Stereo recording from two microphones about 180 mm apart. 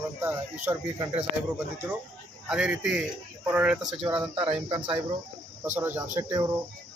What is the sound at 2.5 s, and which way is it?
A man's voice, 5° right (ahead or behind).